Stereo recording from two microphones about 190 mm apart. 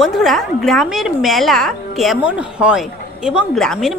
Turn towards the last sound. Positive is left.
turn(degrees=0)  # may be behind; listen again after turning